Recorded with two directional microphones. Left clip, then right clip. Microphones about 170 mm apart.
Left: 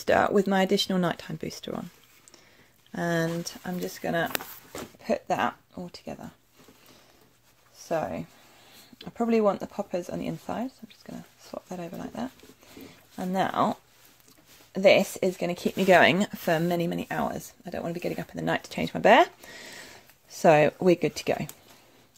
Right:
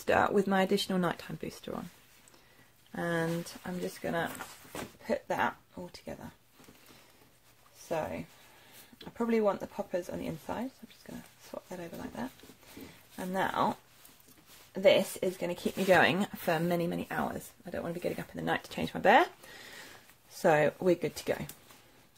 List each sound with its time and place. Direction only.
0.0 s speech: 25° left (ahead or behind)
2.9 s speech: 35° left (ahead or behind)
8.9 s speech: 35° left (ahead or behind)
20.4 s speech: 35° left (ahead or behind)